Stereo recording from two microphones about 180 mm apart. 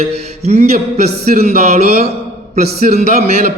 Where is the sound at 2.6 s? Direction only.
60° right (ahead or behind).